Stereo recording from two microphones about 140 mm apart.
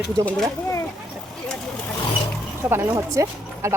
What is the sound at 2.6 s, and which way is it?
Speech, 15° right (ahead or behind).